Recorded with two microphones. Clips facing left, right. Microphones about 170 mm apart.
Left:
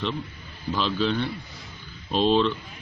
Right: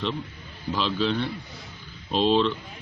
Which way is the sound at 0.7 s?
Centre (ahead or behind).